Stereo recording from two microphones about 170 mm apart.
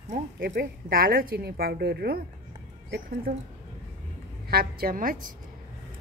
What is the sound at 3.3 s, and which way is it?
Speech, 70° right (ahead or behind).